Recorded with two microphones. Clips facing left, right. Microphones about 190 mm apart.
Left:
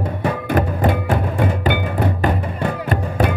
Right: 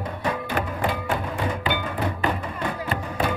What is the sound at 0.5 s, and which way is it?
Music, 50° left (ahead or behind).